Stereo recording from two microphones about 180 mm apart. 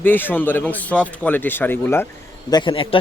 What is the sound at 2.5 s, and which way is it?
Speech, 25° left (ahead or behind).